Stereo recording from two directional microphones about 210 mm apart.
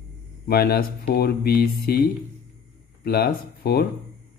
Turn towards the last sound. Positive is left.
turn(degrees=50)  # may be behind; listen again after turning